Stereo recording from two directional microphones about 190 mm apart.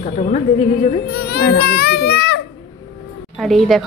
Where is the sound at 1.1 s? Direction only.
55° left (ahead or behind).